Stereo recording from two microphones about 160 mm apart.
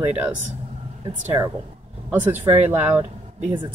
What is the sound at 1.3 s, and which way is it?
Speech, 20° right (ahead or behind).